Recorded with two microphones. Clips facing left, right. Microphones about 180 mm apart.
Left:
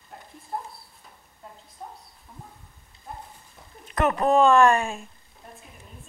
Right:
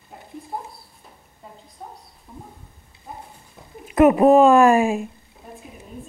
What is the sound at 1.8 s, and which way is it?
Dog, 5° right (ahead or behind).